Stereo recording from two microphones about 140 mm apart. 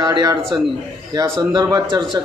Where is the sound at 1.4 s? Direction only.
25° right (ahead or behind).